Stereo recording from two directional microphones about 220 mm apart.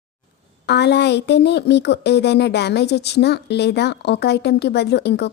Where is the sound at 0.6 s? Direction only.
50° left (ahead or behind).